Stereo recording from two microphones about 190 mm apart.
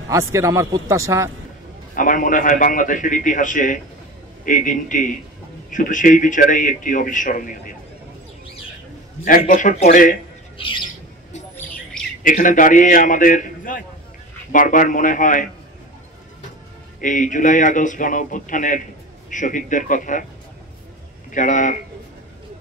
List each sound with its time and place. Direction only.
0.1 s a man's voice: 15° right (ahead or behind)
2.0 s speech: 45° left (ahead or behind)
9.2 s speech: 45° left (ahead or behind)
10.6 s bird: 25° left (ahead or behind)
12.2 s speech: 45° left (ahead or behind)
17.0 s speech: 40° left (ahead or behind)
21.3 s speech: 40° left (ahead or behind)